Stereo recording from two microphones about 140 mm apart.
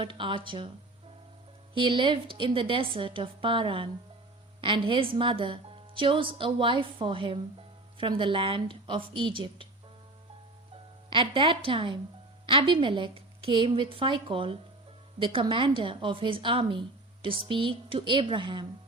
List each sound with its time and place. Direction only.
0.0 s a woman's voice: 35° right (ahead or behind)
1.7 s a woman's voice: 35° right (ahead or behind)
11.1 s a woman's voice: 35° right (ahead or behind)